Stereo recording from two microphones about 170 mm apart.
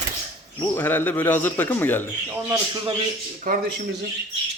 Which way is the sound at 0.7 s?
10° left (ahead or behind).